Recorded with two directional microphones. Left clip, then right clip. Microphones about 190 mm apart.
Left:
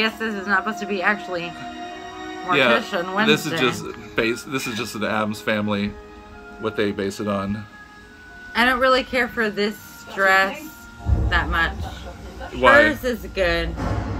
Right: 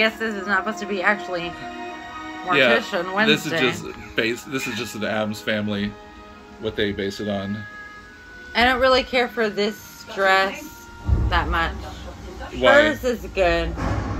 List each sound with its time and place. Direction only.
0.0 s a woman's voice: 20° left (ahead or behind)
0.7 s speech: 10° left (ahead or behind)
2.4 s speech: 10° left (ahead or behind)
8.5 s speech: 10° left (ahead or behind)